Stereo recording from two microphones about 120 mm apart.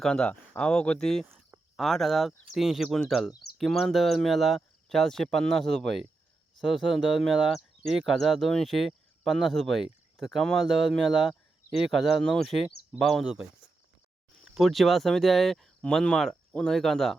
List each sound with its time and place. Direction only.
0.0 s speech: 5° left (ahead or behind)
1.3 s cricket: 20° right (ahead or behind)
1.7 s speech: centre (ahead or behind)